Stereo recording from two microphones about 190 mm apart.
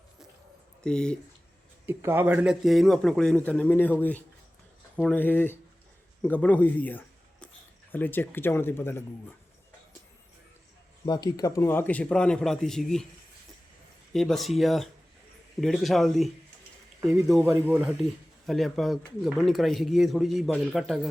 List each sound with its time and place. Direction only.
0.8 s speech: 5° left (ahead or behind)
1.9 s a man's voice: 10° right (ahead or behind); by 9.0 s 10° left (ahead or behind)
11.0 s a man's voice: 20° left (ahead or behind); by 13.1 s centre (ahead or behind)
14.1 s speech: centre (ahead or behind)
17.3 s speech: 15° right (ahead or behind)